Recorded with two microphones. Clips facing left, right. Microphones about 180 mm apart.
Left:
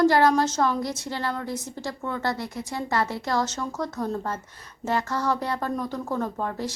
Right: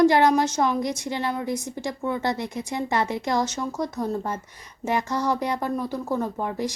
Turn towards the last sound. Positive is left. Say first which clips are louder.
# right 2 dB
turn(degrees=-10)  # may be behind; listen again after turning